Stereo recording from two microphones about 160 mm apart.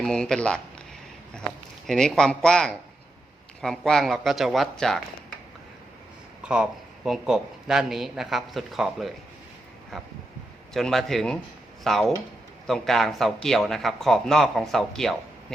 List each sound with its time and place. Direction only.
0.0 s speech: 5° left (ahead or behind)
1.9 s speech: 5° left (ahead or behind)
6.4 s speech: 5° right (ahead or behind)